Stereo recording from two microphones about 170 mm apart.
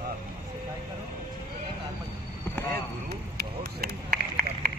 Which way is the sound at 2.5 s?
10° left (ahead or behind).